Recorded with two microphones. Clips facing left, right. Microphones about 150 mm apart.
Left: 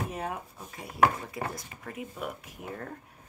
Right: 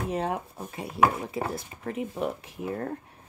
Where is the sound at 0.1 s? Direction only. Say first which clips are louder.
Right 6 dB; 30° right (ahead or behind).